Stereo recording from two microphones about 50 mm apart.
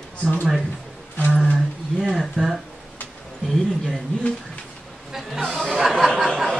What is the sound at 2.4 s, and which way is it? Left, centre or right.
Speech, right.